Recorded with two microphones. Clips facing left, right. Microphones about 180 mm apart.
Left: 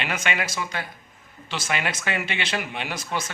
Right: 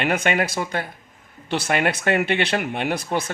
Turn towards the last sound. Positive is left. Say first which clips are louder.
# right 6 dB
turn(degrees=-55)  # may be behind; listen again after turning